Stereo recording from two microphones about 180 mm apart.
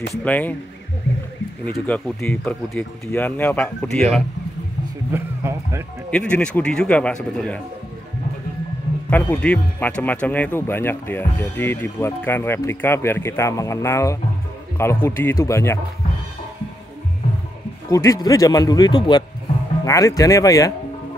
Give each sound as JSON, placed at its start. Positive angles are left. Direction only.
{"t": 0.2, "sound": "speech", "side_deg": 10}
{"t": 1.9, "sound": "speech", "side_deg": 10}
{"t": 5.1, "sound": "speech", "side_deg": -15}
{"t": 6.0, "sound": "speech", "side_deg": 5}
{"t": 9.1, "sound": "speech", "side_deg": 10}
{"t": 17.8, "sound": "speech", "side_deg": 20}